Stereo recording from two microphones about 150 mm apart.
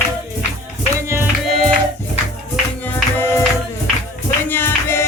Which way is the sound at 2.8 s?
15° left (ahead or behind).